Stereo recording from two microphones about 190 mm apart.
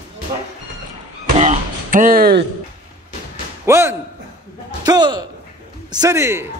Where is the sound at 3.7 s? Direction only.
15° right (ahead or behind).